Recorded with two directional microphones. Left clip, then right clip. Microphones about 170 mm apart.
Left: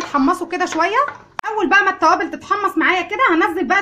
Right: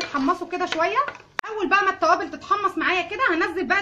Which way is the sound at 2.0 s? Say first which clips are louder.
Left 5 dB; 50° left (ahead or behind).